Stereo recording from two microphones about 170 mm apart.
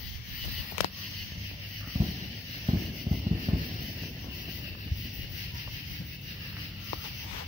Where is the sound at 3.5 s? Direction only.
25° right (ahead or behind).